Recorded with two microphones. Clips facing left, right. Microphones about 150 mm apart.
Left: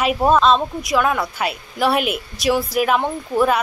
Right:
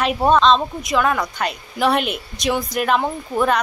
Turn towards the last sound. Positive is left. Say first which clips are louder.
# left 1 dB
turn(degrees=5)  # may be behind; listen again after turning